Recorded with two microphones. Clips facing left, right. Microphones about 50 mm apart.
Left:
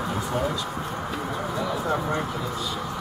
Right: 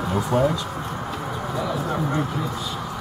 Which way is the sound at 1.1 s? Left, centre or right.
Centre.